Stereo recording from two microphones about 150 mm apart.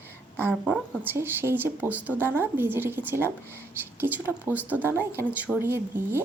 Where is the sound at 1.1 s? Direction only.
15° right (ahead or behind).